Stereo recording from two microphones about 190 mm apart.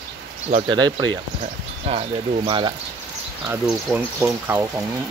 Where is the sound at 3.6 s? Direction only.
5° right (ahead or behind).